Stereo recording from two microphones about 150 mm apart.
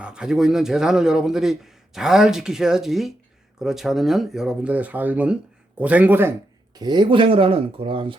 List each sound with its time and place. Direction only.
0.0 s a man's voice: 5° right (ahead or behind)
6.7 s speech: 30° right (ahead or behind)